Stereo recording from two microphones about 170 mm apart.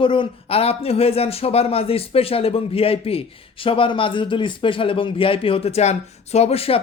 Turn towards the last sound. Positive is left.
turn(degrees=35)  # may be behind; listen again after turning